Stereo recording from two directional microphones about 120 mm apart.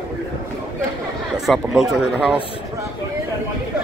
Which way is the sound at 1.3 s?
5° right (ahead or behind).